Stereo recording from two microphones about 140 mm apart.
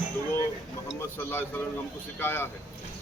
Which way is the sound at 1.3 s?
15° left (ahead or behind).